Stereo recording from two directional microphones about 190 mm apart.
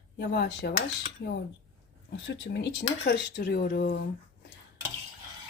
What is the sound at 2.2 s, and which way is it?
Speech, 70° left (ahead or behind).